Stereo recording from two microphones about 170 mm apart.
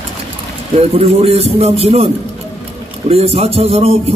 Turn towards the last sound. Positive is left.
turn(degrees=-35)  # may be behind; listen again after turning